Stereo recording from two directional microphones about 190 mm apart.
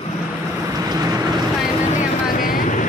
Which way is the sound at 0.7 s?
20° right (ahead or behind).